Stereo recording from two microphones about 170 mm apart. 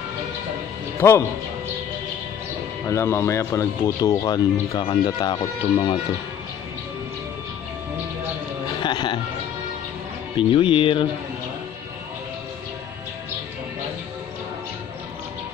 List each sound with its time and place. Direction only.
2.9 s speech: 15° left (ahead or behind)
8.8 s speech: 25° left (ahead or behind)
10.3 s speech: 30° left (ahead or behind)